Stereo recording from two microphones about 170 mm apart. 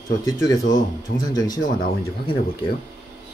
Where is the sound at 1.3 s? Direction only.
25° left (ahead or behind).